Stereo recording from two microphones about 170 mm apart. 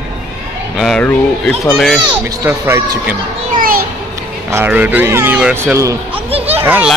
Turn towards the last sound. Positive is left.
turn(degrees=-10)  # may be behind; listen again after turning